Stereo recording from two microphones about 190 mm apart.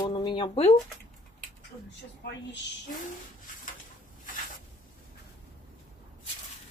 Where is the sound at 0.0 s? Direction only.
25° left (ahead or behind).